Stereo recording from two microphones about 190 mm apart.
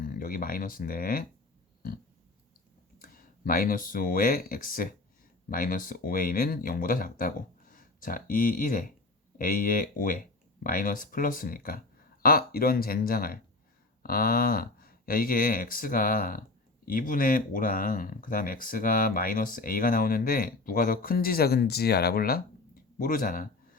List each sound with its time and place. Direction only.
0.0 s speech: 50° left (ahead or behind)
3.0 s speech: 45° left (ahead or behind)